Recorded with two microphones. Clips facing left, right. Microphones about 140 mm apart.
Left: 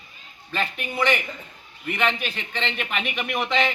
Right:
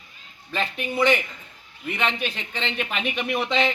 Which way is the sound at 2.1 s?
15° right (ahead or behind).